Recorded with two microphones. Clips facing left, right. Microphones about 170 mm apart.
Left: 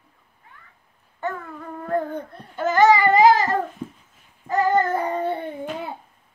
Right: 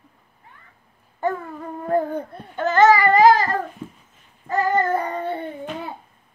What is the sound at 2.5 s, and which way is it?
Child singing, 10° left (ahead or behind).